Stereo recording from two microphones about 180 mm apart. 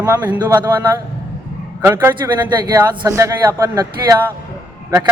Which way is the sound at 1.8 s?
15° right (ahead or behind).